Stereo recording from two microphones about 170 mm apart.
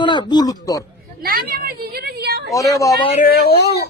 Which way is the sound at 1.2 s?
60° right (ahead or behind).